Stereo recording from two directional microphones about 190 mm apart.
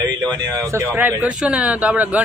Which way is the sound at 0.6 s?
10° right (ahead or behind).